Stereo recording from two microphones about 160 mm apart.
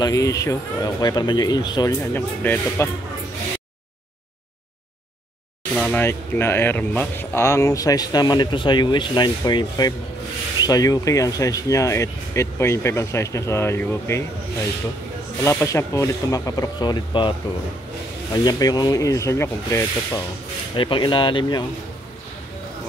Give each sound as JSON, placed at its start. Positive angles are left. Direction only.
{"t": 0.0, "sound": "speech", "side_deg": 20}
{"t": 1.9, "sound": "speech", "side_deg": 15}
{"t": 5.9, "sound": "speech", "side_deg": 15}
{"t": 15.4, "sound": "speech", "side_deg": 20}
{"t": 20.7, "sound": "speech", "side_deg": 30}